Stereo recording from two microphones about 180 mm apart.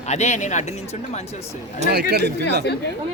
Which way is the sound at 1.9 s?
65° right (ahead or behind).